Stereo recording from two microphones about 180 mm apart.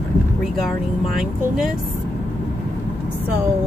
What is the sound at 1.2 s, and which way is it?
Speech, centre (ahead or behind).